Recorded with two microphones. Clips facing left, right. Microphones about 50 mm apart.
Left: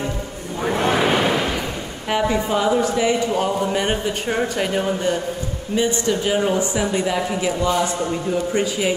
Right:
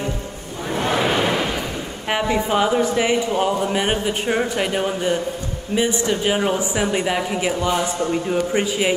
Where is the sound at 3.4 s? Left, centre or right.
Centre.